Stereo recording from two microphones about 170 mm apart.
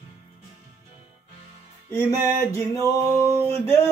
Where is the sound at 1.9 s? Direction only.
20° left (ahead or behind).